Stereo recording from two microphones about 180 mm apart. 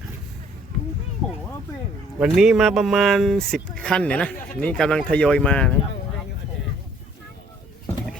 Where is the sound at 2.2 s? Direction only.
5° right (ahead or behind).